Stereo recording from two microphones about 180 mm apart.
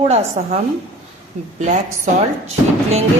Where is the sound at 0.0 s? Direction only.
35° right (ahead or behind).